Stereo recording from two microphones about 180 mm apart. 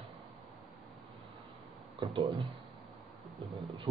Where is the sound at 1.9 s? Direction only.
25° right (ahead or behind).